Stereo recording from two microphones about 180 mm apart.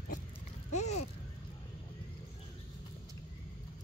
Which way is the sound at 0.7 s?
40° left (ahead or behind).